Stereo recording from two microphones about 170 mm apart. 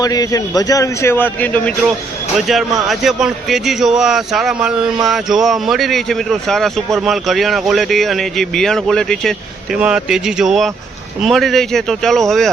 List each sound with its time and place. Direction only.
0.0 s a man's voice: 20° left (ahead or behind); by 12.5 s centre (ahead or behind)